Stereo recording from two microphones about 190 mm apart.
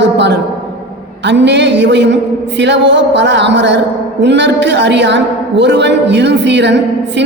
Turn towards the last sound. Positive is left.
turn(degrees=-70)  # may be behind; listen again after turning